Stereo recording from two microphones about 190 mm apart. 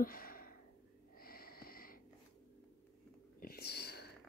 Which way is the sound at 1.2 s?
50° left (ahead or behind).